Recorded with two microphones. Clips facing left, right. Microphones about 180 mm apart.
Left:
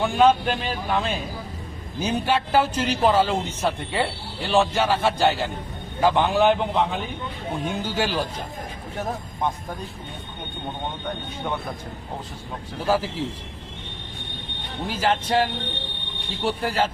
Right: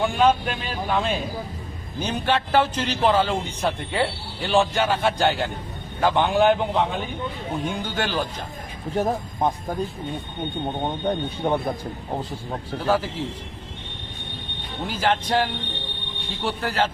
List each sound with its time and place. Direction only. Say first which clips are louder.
0.0 s speech: left 1 dB; centre (ahead or behind)
7.7 s speech: left 4 dB; 5° left (ahead or behind)
9.0 s speech: right 5 dB; 35° right (ahead or behind)
11.0 s speech: right 6 dB; 35° right (ahead or behind)
12.8 s speech: even; 10° left (ahead or behind)
14.8 s speech: even; 5° left (ahead or behind)